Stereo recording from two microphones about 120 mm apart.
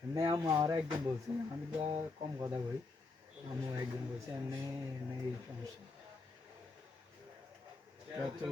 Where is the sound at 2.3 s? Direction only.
25° right (ahead or behind).